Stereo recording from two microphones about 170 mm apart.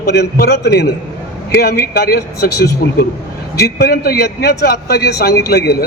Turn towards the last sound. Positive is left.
turn(degrees=70)  # may be behind; listen again after turning